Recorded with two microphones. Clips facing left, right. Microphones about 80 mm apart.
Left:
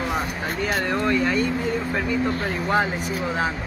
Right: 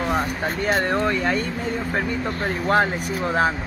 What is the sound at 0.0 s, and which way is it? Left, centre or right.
Speech, right.